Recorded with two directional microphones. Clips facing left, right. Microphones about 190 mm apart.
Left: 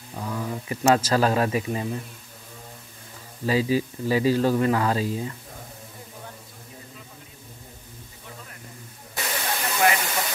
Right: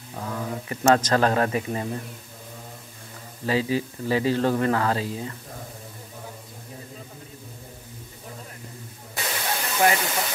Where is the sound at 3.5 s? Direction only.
15° left (ahead or behind).